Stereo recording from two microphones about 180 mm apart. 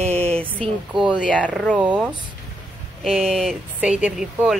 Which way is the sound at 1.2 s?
5° left (ahead or behind).